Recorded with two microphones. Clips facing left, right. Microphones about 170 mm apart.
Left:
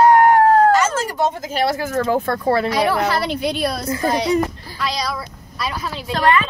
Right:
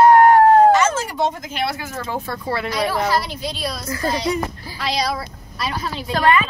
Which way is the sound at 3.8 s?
25° left (ahead or behind).